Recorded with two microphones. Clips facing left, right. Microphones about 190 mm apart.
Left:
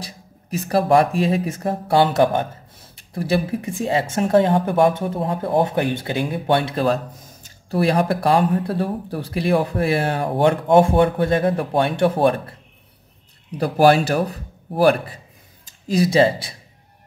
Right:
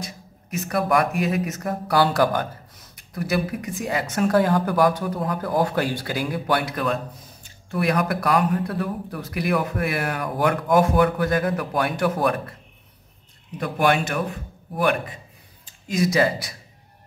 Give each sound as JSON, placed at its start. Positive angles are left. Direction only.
{"t": 0.0, "sound": "speech", "side_deg": 30}
{"t": 13.6, "sound": "a man's voice", "side_deg": 35}